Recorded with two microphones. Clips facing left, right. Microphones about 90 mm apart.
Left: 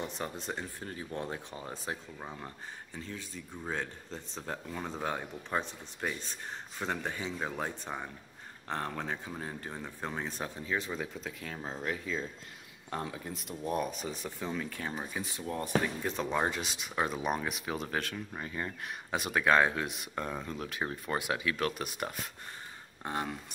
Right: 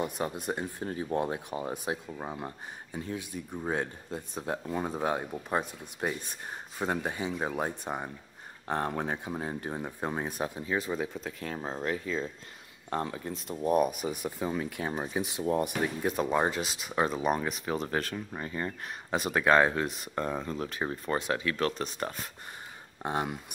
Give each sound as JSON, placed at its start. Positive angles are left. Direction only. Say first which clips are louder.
{"t": 0.0, "sound": "speech", "louder": "right 6 dB", "side_deg": -10}
{"t": 13.6, "sound": "speech", "louder": "right 8 dB", "side_deg": -10}
{"t": 23.0, "sound": "speech", "louder": "right 4 dB", "side_deg": -15}